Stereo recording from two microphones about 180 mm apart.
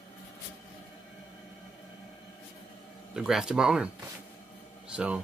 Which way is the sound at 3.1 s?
5° right (ahead or behind).